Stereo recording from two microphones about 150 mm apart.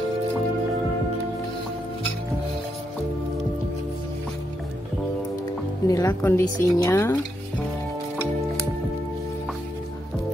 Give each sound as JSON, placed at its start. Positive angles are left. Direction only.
{"t": 5.9, "sound": "a woman's voice", "side_deg": 20}